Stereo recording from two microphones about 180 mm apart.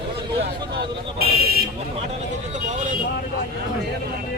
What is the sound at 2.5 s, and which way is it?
Speech, 40° right (ahead or behind).